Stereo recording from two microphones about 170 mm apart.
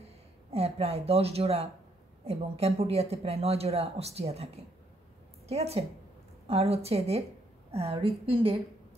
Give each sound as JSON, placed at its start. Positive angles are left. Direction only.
{"t": 0.5, "sound": "speech", "side_deg": -35}
{"t": 5.5, "sound": "speech", "side_deg": -35}